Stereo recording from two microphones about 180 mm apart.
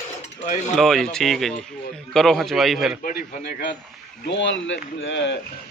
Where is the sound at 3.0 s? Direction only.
50° left (ahead or behind).